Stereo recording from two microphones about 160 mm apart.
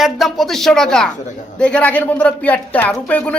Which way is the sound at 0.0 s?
Centre (ahead or behind).